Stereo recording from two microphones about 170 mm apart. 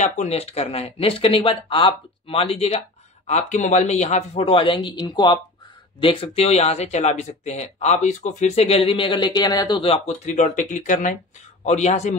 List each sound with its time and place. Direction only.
0.0 s speech: 40° left (ahead or behind)